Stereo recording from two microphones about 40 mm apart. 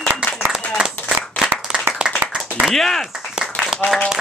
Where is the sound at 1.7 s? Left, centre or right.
Right.